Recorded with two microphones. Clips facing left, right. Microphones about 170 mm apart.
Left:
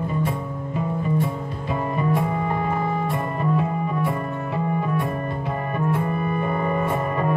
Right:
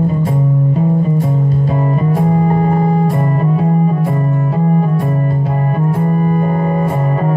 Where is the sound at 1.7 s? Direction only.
40° right (ahead or behind).